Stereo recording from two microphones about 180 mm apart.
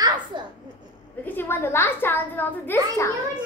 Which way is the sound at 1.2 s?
10° left (ahead or behind).